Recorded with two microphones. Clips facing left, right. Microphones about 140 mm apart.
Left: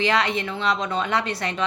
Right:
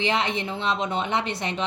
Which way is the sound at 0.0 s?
20° right (ahead or behind).